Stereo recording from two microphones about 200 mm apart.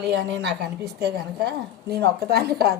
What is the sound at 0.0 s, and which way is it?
A woman's voice, 60° right (ahead or behind).